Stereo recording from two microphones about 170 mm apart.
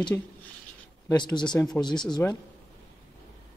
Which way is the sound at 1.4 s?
5° left (ahead or behind).